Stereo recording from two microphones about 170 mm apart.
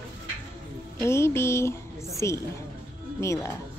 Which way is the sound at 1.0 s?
15° left (ahead or behind).